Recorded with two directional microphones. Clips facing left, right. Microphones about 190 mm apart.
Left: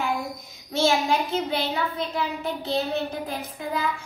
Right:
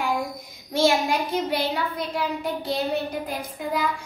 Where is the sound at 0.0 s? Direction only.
15° right (ahead or behind).